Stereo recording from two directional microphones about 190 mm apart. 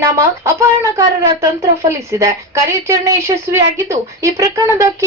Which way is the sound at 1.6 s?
15° right (ahead or behind).